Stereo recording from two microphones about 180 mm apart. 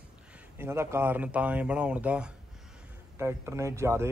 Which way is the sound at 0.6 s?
15° right (ahead or behind).